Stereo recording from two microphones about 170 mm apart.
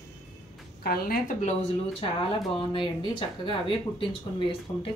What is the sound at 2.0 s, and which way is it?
Speech, 30° left (ahead or behind).